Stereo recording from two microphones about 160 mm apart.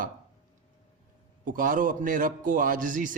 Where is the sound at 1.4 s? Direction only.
55° right (ahead or behind).